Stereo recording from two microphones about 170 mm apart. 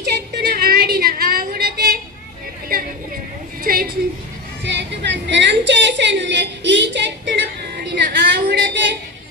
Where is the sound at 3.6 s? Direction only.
60° right (ahead or behind).